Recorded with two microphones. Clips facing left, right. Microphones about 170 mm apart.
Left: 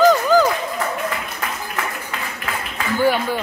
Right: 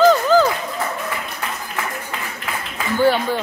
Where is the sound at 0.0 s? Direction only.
15° left (ahead or behind).